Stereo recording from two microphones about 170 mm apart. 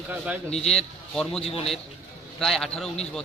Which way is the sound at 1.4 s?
35° left (ahead or behind).